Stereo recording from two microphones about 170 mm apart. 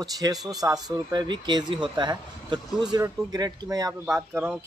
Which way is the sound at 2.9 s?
20° right (ahead or behind).